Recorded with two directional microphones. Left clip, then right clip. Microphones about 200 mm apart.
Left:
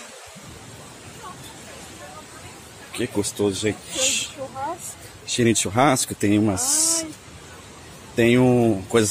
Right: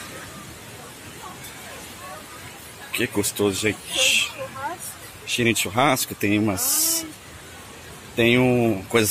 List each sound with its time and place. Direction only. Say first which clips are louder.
2.9 s speech: right 2 dB; 10° left (ahead or behind)
3.9 s speech: right 4 dB; 25° left (ahead or behind)
8.2 s speech: left 1 dB; 30° left (ahead or behind)